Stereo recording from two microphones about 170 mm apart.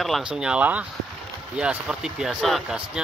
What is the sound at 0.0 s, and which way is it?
Speech, 5° right (ahead or behind).